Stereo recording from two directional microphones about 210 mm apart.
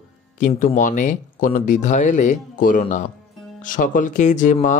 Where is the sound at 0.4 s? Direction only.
35° left (ahead or behind).